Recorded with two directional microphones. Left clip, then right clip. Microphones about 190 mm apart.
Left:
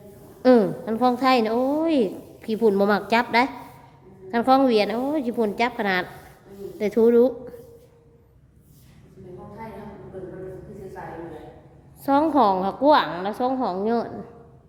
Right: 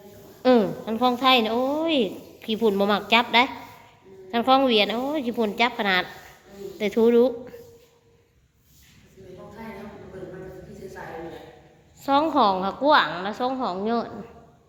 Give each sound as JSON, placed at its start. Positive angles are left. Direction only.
{"t": 0.4, "sound": "a woman's voice", "side_deg": 30}
{"t": 12.0, "sound": "a woman's voice", "side_deg": 30}